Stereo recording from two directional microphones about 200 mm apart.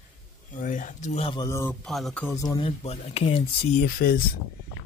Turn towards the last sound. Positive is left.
turn(degrees=45)  # may be behind; listen again after turning